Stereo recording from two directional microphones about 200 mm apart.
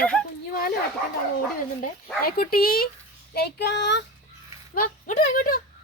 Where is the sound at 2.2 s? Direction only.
50° left (ahead or behind).